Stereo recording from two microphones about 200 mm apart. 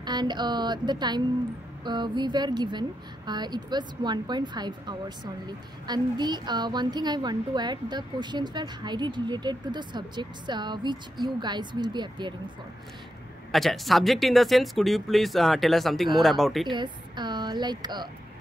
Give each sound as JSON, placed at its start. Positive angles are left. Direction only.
{"t": 0.0, "sound": "a woman's voice", "side_deg": -20}
{"t": 13.5, "sound": "speech", "side_deg": 0}
{"t": 16.6, "sound": "a woman's voice", "side_deg": -20}